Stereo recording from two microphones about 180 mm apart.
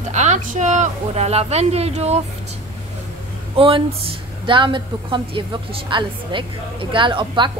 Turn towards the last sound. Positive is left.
turn(degrees=-25)  # may be behind; listen again after turning